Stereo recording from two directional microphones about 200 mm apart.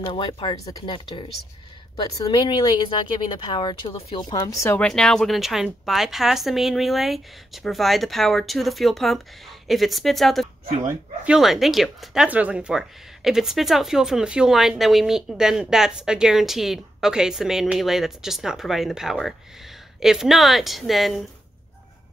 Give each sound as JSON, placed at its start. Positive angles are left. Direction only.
{"t": 0.0, "sound": "speech", "side_deg": 25}